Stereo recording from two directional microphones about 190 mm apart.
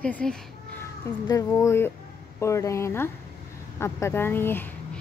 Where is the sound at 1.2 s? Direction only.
20° left (ahead or behind).